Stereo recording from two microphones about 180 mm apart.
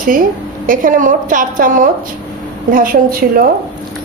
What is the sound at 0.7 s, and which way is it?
A woman's voice, 45° right (ahead or behind).